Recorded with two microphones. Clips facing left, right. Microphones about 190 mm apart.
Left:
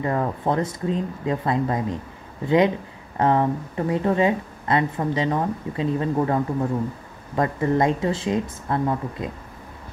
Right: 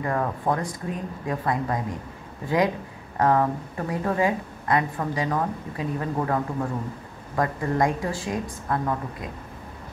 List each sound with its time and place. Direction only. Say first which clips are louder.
0.0 s speech: left 2 dB; 25° left (ahead or behind)